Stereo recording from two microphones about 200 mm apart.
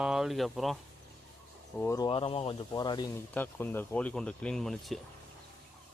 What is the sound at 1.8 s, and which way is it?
Speech, 15° left (ahead or behind).